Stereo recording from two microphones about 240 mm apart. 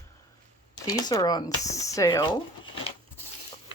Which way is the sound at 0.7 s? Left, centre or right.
Centre.